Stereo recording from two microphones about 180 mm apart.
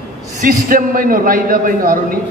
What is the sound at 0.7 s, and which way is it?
A man's voice, 50° right (ahead or behind).